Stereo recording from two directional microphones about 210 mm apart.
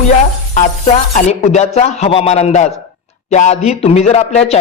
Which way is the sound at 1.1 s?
35° left (ahead or behind).